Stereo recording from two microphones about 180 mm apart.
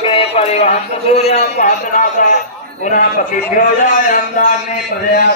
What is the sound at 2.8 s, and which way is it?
A man's voice, 45° left (ahead or behind).